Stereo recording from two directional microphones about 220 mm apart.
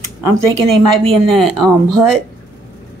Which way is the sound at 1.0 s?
Centre (ahead or behind).